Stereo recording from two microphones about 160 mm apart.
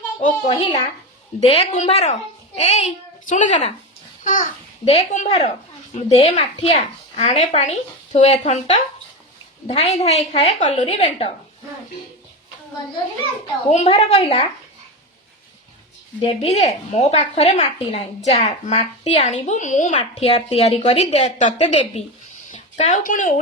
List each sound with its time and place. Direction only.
0.2 s a woman's voice: 50° left (ahead or behind)
4.9 s a woman's voice: 45° left (ahead or behind)
13.7 s a woman's voice: 40° left (ahead or behind)
16.2 s a woman's voice: 40° left (ahead or behind)
20.0 s a woman's voice: 35° left (ahead or behind); by 23.4 s 55° left (ahead or behind)